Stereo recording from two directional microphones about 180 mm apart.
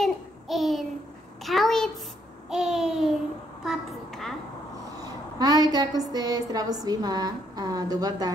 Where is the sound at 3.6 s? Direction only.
Centre (ahead or behind).